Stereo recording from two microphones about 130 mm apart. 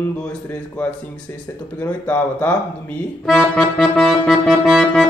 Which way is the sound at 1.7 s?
15° left (ahead or behind).